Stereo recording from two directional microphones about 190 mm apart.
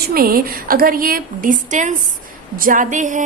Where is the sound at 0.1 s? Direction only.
50° right (ahead or behind).